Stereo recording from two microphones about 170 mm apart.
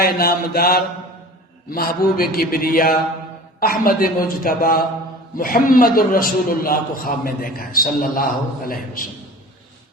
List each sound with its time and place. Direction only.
0.0 s a man's voice: 65° left (ahead or behind)